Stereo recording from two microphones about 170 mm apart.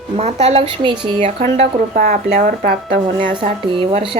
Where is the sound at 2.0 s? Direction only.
60° right (ahead or behind).